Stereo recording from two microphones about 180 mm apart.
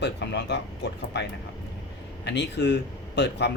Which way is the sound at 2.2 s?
75° left (ahead or behind).